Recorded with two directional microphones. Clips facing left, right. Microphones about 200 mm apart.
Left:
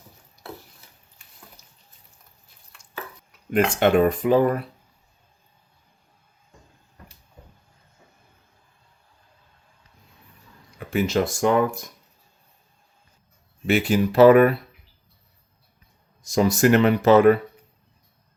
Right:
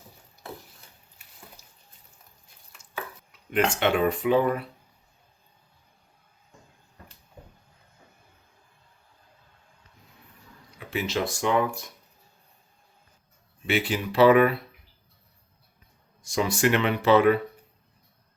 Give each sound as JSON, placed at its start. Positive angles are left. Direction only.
{"t": 3.5, "sound": "speech", "side_deg": 45}
{"t": 10.8, "sound": "speech", "side_deg": 45}
{"t": 13.7, "sound": "speech", "side_deg": 45}
{"t": 16.2, "sound": "speech", "side_deg": 40}